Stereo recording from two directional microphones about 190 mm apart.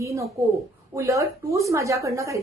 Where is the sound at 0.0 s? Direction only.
15° right (ahead or behind).